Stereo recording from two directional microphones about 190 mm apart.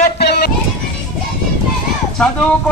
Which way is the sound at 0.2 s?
60° left (ahead or behind).